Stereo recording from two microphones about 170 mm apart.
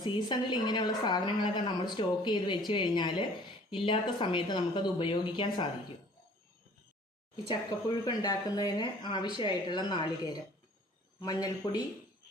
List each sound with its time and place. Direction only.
0.0 s speech: 25° left (ahead or behind)
7.4 s speech: 25° left (ahead or behind)
11.3 s speech: 20° left (ahead or behind)